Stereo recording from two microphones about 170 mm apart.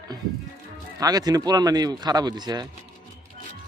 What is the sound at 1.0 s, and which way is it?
Speech, 20° right (ahead or behind).